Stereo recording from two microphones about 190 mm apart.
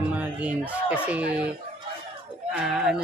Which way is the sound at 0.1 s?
10° right (ahead or behind).